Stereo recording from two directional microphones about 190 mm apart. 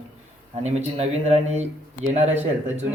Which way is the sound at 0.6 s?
35° right (ahead or behind).